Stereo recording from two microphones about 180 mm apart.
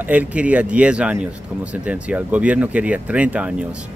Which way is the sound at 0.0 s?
10° right (ahead or behind).